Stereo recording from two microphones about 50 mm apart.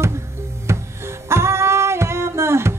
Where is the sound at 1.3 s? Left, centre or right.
Right.